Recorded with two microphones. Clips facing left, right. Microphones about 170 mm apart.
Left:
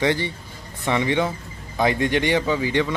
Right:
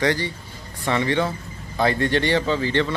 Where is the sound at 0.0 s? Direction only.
20° left (ahead or behind).